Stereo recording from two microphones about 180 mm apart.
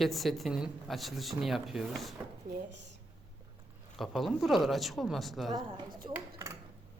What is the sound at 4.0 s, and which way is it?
Speech, centre (ahead or behind).